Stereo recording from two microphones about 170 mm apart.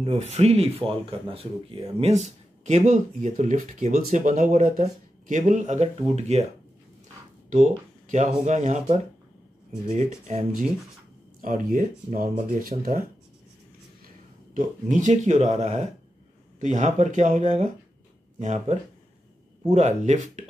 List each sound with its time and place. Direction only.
0.0 s speech: 40° right (ahead or behind)
8.5 s speech: 45° right (ahead or behind)
14.5 s speech: 45° right (ahead or behind)